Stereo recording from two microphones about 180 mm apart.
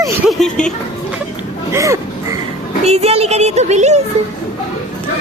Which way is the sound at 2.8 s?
35° right (ahead or behind).